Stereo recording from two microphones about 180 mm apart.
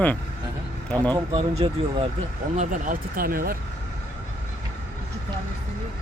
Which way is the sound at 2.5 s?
45° right (ahead or behind).